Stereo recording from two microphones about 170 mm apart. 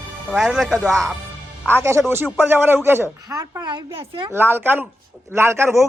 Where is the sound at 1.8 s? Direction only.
15° right (ahead or behind).